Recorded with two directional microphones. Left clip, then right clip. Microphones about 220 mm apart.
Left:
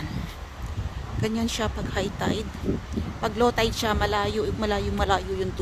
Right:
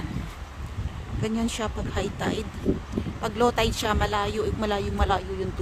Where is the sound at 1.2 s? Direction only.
Centre (ahead or behind).